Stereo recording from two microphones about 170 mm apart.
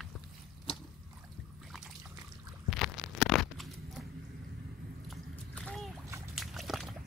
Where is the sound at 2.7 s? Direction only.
Centre (ahead or behind).